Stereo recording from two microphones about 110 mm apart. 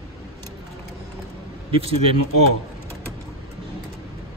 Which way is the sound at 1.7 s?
60° right (ahead or behind).